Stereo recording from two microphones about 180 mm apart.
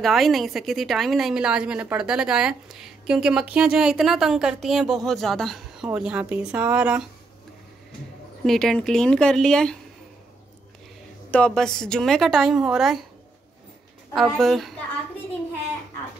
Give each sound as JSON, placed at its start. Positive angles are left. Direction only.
{"t": 0.0, "sound": "a woman's voice", "side_deg": 0}
{"t": 8.5, "sound": "a woman's voice", "side_deg": 5}
{"t": 11.2, "sound": "a woman's voice", "side_deg": 5}
{"t": 14.1, "sound": "a woman's voice", "side_deg": 0}